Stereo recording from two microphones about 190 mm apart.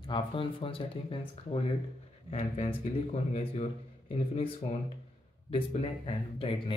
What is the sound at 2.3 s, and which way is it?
Speech, 35° left (ahead or behind).